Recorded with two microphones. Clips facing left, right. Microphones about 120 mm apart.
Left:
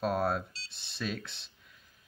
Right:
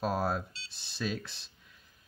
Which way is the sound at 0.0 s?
Centre (ahead or behind).